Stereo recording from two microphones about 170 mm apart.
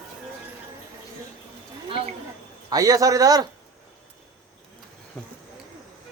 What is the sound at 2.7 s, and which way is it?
Speech, 20° right (ahead or behind).